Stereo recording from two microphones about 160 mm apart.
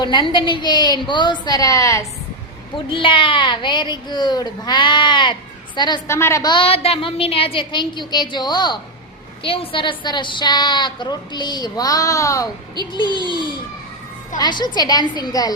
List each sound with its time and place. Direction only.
0.0 s a woman's voice: 30° left (ahead or behind)
2.7 s a woman's voice: 30° left (ahead or behind)
6.1 s a woman's voice: 15° left (ahead or behind)